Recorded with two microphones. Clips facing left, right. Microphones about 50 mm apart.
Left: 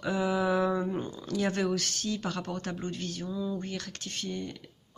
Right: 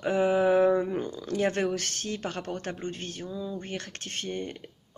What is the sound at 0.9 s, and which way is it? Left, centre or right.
Speech, right.